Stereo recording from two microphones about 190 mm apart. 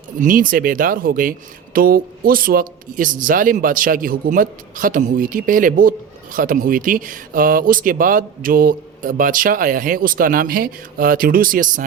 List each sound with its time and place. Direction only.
0.2 s speech: 45° right (ahead or behind)